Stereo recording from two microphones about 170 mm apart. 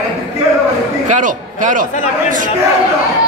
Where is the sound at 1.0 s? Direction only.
45° right (ahead or behind).